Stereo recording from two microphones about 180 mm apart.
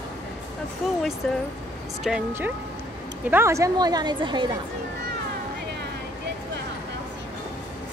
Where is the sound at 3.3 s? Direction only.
15° right (ahead or behind).